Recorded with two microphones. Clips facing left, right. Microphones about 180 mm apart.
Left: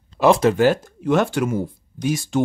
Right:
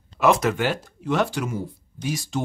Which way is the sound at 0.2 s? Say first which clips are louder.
Left 5 dB; 30° left (ahead or behind).